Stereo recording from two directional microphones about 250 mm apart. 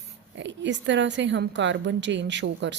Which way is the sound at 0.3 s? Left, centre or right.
Right.